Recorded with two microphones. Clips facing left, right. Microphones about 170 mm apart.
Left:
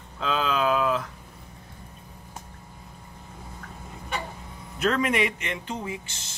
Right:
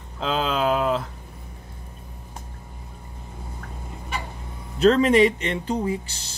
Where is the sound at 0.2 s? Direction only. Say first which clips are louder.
Right 2 dB; 30° right (ahead or behind).